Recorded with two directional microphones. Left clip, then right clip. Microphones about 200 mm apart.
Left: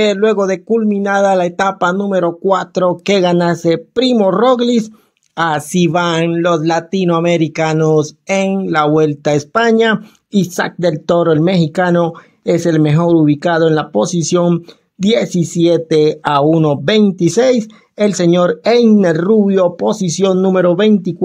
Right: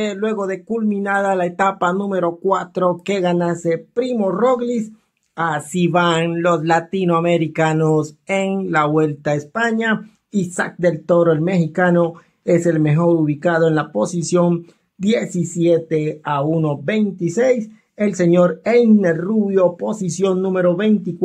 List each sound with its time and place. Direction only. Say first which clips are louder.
0.0 s speech: left 9 dB; 30° left (ahead or behind)
3.2 s speech: left 6 dB; 40° left (ahead or behind)